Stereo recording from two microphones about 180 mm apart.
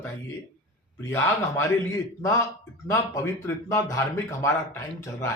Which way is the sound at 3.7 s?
20° left (ahead or behind).